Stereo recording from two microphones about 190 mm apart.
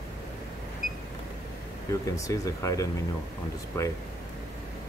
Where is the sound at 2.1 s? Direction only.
15° left (ahead or behind).